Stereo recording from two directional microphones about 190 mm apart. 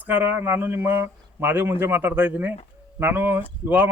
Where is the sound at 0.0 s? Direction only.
10° right (ahead or behind).